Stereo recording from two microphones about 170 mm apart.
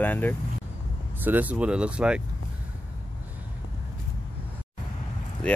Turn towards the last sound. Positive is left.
turn(degrees=5)  # may be behind; listen again after turning